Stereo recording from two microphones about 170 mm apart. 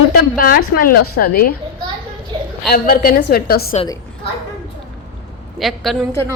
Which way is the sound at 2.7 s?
60° left (ahead or behind).